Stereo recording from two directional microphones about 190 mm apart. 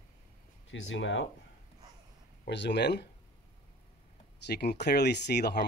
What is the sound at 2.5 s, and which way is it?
Speech, 65° left (ahead or behind).